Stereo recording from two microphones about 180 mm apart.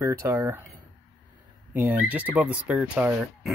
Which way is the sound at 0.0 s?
15° right (ahead or behind).